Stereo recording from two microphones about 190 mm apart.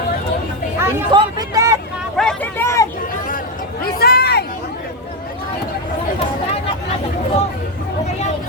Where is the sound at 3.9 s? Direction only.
55° left (ahead or behind).